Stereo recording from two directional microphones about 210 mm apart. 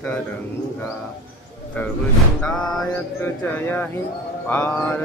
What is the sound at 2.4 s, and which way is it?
Music, 5° left (ahead or behind).